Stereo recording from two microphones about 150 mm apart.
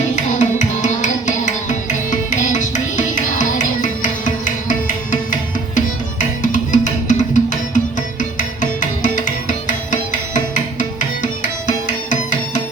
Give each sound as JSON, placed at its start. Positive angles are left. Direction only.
{"t": 0.2, "sound": "music", "side_deg": 55}
{"t": 9.0, "sound": "music", "side_deg": 60}